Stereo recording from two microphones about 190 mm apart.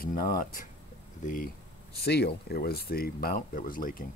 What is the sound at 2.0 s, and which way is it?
Speech, 55° left (ahead or behind).